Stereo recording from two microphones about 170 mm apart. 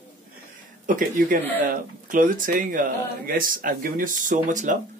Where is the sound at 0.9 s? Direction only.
55° right (ahead or behind).